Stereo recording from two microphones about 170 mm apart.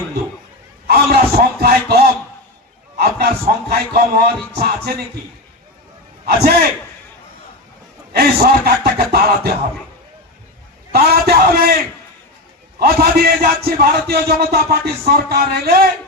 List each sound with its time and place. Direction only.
0.9 s a man's voice: 65° right (ahead or behind)
3.0 s a man's voice: 65° right (ahead or behind)
6.2 s a man's voice: 70° right (ahead or behind)
8.1 s a man's voice: 70° right (ahead or behind)
10.9 s a man's voice: 65° right (ahead or behind)
12.8 s a man's voice: 65° right (ahead or behind)